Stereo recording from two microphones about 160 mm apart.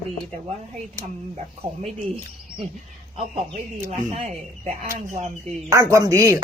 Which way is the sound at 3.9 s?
40° right (ahead or behind).